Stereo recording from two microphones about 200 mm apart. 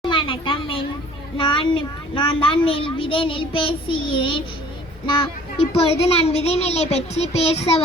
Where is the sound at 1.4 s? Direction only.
25° left (ahead or behind).